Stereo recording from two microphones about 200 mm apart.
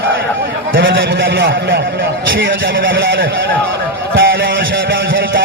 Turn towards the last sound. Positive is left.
turn(degrees=-55)  # may be behind; listen again after turning